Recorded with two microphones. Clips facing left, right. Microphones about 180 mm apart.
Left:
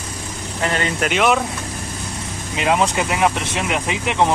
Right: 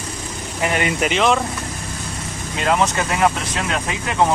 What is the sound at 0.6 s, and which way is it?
Speech, 15° right (ahead or behind).